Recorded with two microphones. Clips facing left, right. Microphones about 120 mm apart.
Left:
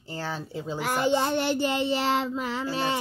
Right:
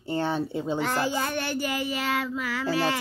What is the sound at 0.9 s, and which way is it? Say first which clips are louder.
Child singing: left 3 dB; 25° left (ahead or behind).